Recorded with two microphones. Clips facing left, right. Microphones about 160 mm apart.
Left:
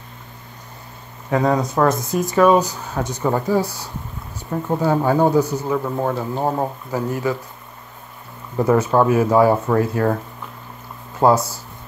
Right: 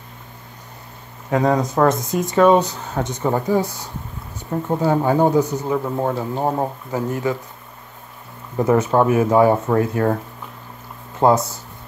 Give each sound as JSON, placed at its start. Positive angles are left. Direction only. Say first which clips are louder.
{"t": 1.4, "sound": "speech", "louder": "right 1 dB", "side_deg": -40}
{"t": 1.9, "sound": "speech", "louder": "even", "side_deg": -20}
{"t": 8.5, "sound": "speech", "louder": "even", "side_deg": -20}
{"t": 11.1, "sound": "speech", "louder": "even", "side_deg": -20}